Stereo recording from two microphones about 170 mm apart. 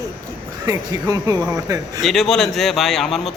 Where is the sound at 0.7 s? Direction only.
20° right (ahead or behind).